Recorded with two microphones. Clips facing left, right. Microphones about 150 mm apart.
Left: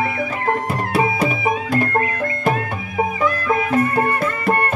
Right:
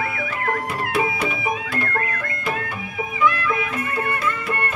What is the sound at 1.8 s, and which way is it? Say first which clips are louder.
Music: left 6 dB; 45° left (ahead or behind).